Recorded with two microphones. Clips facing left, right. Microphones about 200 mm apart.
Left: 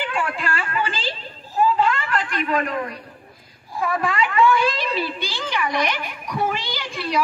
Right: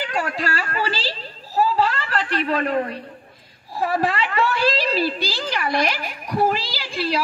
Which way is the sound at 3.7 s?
35° right (ahead or behind).